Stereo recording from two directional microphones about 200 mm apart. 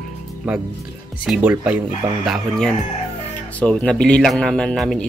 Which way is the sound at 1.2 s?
5° right (ahead or behind).